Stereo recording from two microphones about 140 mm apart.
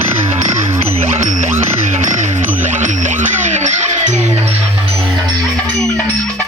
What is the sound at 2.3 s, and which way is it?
Music, 60° right (ahead or behind).